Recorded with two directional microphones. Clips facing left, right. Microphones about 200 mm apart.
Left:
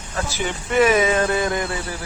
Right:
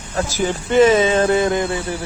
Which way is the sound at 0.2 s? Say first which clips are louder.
Right 5 dB; 35° right (ahead or behind).